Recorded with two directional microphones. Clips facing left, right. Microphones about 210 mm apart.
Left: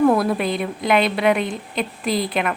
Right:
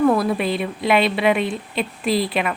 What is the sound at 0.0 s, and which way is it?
Speech, centre (ahead or behind).